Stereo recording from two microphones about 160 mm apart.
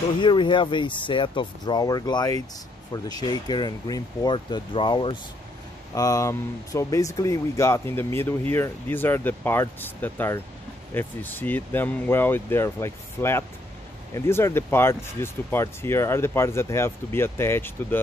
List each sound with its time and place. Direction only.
0.2 s speech: 30° left (ahead or behind)
5.9 s speech: 20° left (ahead or behind)